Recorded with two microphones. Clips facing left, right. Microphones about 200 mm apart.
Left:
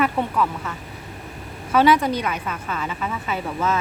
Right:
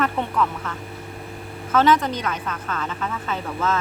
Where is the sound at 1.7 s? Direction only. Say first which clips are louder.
Left 1 dB; 10° left (ahead or behind).